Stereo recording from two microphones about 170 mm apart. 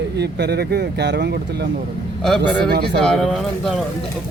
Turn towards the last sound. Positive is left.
turn(degrees=0)  # may be behind; listen again after turning